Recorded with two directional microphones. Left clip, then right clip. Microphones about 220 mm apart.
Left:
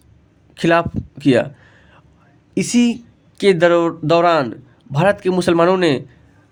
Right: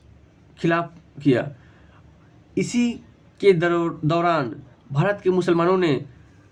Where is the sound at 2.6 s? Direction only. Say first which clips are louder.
Left 6 dB; 45° left (ahead or behind).